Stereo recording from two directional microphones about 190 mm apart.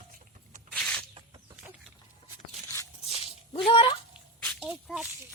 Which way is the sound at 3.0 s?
30° left (ahead or behind).